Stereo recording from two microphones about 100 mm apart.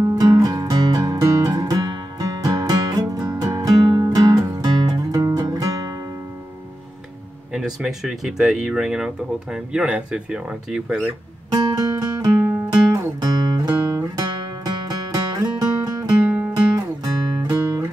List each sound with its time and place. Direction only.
0.1 s music: 40° right (ahead or behind)
7.5 s speech: 5° right (ahead or behind)
11.5 s music: 40° right (ahead or behind)
12.4 s music: 20° right (ahead or behind)
12.6 s guitar: 40° right (ahead or behind)
16.3 s music: 15° right (ahead or behind)
16.7 s music: 40° right (ahead or behind)